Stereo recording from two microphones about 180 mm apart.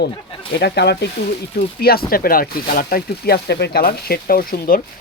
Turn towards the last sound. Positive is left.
turn(degrees=55)  # may be behind; listen again after turning